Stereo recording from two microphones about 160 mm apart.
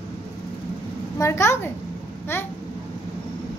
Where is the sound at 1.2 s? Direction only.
15° left (ahead or behind).